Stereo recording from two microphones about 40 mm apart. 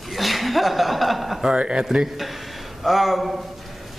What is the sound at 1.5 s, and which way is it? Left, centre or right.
Speech, right.